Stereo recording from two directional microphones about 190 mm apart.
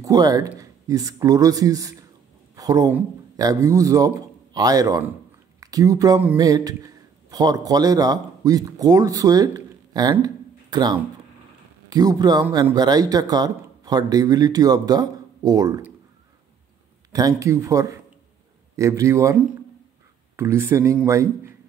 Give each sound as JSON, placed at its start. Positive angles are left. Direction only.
{"t": 0.0, "sound": "speech", "side_deg": -20}
{"t": 2.5, "sound": "a sound", "side_deg": -20}
{"t": 2.9, "sound": "speech", "side_deg": -10}
{"t": 10.1, "sound": "a sound", "side_deg": -20}
{"t": 11.9, "sound": "speech", "side_deg": -20}
{"t": 17.1, "sound": "speech", "side_deg": -20}
{"t": 20.3, "sound": "speech", "side_deg": -15}